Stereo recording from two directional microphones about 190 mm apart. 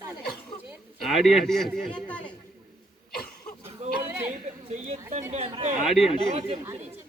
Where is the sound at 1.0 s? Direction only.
Centre (ahead or behind).